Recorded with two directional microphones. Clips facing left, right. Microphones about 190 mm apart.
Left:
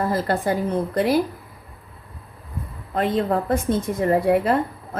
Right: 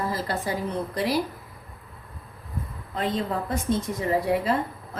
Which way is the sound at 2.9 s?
55° left (ahead or behind).